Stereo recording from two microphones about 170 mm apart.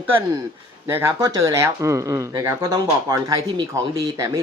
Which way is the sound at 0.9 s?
15° right (ahead or behind).